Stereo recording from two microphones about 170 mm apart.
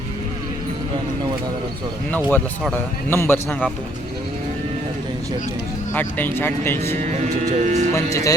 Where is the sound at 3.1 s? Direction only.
15° left (ahead or behind).